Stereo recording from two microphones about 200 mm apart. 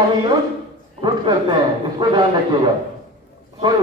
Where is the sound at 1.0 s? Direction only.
25° right (ahead or behind).